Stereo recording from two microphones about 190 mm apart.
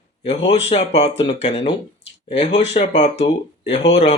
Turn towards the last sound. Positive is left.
turn(degrees=35)  # may be behind; listen again after turning